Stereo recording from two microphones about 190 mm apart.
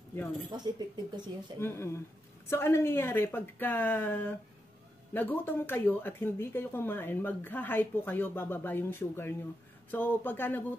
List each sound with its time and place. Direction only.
0.5 s speech: 20° right (ahead or behind)
1.6 s speech: 15° left (ahead or behind)